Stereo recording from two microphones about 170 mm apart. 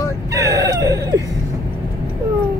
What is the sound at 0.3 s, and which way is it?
Whimper, 20° right (ahead or behind).